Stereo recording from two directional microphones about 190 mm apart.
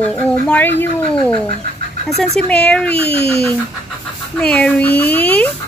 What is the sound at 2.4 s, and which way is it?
Speech, 5° left (ahead or behind).